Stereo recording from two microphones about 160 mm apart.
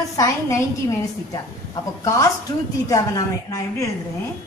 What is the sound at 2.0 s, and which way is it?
A woman's voice, 20° left (ahead or behind).